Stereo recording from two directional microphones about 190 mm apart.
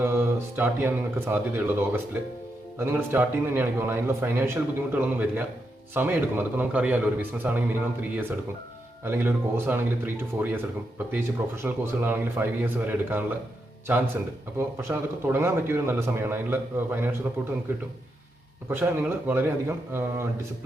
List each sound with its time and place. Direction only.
0.0 s a man's voice: 10° right (ahead or behind)
2.7 s a man's voice: 10° right (ahead or behind)
14.6 s a man's voice: 15° right (ahead or behind)
18.7 s a man's voice: 10° right (ahead or behind)